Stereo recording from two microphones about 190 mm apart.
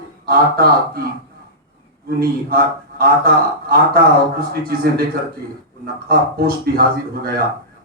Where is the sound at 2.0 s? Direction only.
55° right (ahead or behind).